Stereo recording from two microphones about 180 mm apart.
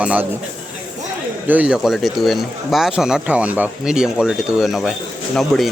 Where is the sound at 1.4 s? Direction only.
10° right (ahead or behind).